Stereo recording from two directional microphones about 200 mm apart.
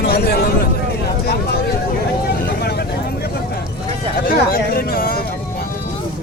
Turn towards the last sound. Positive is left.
turn(degrees=50)  # may be behind; listen again after turning